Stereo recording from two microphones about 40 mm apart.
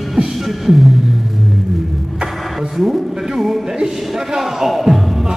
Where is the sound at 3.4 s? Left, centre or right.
Centre.